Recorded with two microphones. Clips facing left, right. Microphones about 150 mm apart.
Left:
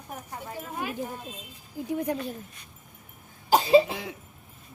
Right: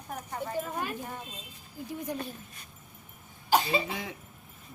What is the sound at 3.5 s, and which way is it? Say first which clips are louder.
Cough: left 8 dB; 35° left (ahead or behind).